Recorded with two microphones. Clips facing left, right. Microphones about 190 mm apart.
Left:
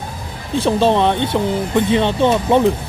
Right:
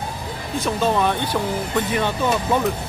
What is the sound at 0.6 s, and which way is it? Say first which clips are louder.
Speech: left 6 dB; 30° left (ahead or behind).